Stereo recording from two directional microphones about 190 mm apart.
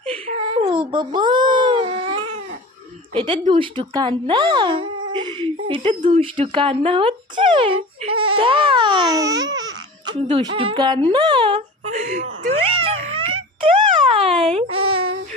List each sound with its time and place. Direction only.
0.4 s baby cry: 25° right (ahead or behind)
3.2 s babbling: 25° right (ahead or behind)
11.9 s a sound: 40° right (ahead or behind)